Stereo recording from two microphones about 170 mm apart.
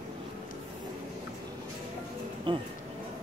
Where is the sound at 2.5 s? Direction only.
30° right (ahead or behind).